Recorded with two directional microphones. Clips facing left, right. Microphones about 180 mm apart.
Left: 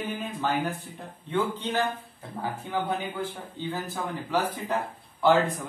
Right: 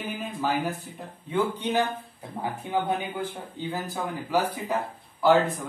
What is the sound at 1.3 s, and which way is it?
Speech, 15° right (ahead or behind).